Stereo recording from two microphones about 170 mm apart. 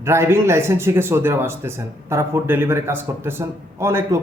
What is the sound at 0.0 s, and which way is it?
A man's voice, 15° right (ahead or behind).